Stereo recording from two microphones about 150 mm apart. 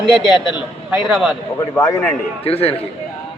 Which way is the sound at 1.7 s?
15° left (ahead or behind).